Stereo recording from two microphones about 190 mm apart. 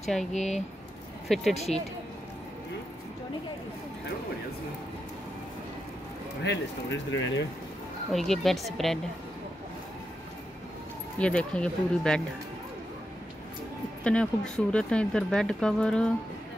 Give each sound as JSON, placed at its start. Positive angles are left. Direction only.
{"t": 0.3, "sound": "speech", "side_deg": 35}
{"t": 1.3, "sound": "speech", "side_deg": 0}
{"t": 6.4, "sound": "speech", "side_deg": 70}
{"t": 8.1, "sound": "speech", "side_deg": 0}
{"t": 11.1, "sound": "speech", "side_deg": 5}
{"t": 14.0, "sound": "speech", "side_deg": 5}